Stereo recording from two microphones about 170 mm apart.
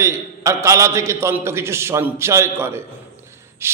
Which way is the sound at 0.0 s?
15° right (ahead or behind).